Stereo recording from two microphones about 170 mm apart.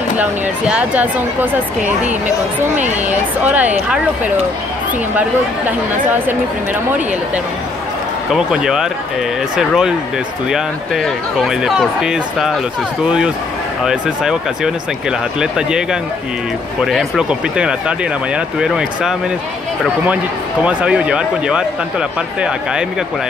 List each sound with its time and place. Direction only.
0.2 s speech: 10° right (ahead or behind)
5.7 s speech: 10° right (ahead or behind)
8.3 s speech: 5° right (ahead or behind)
20.6 s speech: 5° right (ahead or behind)